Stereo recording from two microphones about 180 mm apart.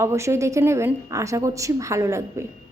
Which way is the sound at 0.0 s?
15° right (ahead or behind).